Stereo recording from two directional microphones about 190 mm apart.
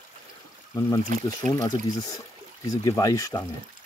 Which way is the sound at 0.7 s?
15° left (ahead or behind).